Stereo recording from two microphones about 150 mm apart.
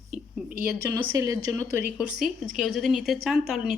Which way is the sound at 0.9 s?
20° right (ahead or behind).